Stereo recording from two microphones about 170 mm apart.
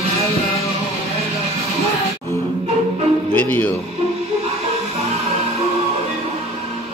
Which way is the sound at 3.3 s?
10° left (ahead or behind).